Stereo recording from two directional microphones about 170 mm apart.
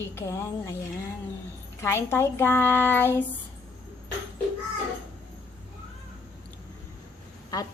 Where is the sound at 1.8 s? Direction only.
15° left (ahead or behind).